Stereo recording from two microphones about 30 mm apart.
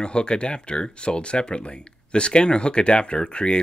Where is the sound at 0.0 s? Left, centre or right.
Left.